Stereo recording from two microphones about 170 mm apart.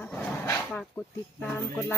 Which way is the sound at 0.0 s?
10° left (ahead or behind).